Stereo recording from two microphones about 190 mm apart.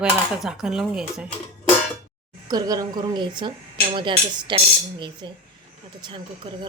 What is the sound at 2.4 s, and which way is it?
Speech, 20° right (ahead or behind).